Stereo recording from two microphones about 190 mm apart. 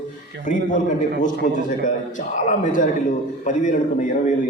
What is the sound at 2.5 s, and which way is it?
A man's voice, 40° left (ahead or behind).